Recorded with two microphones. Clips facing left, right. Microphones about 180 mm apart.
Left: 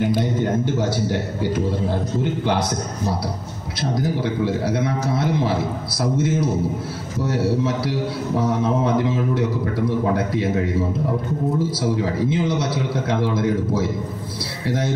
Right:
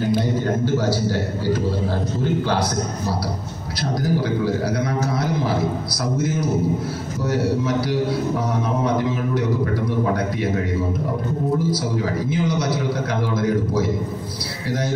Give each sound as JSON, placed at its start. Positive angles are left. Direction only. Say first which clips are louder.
{"t": 0.2, "sound": "a man's voice", "louder": "even", "side_deg": 20}
{"t": 4.0, "sound": "a man's voice", "louder": "right 2 dB", "side_deg": 25}
{"t": 12.0, "sound": "a man's voice", "louder": "left 1 dB", "side_deg": 25}
{"t": 14.7, "sound": "a man's voice", "louder": "left 1 dB", "side_deg": 25}